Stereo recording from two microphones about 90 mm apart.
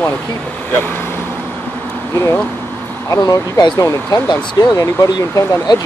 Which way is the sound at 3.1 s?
45° left (ahead or behind).